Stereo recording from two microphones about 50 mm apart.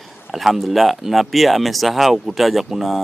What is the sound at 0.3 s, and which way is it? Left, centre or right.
Speech, centre.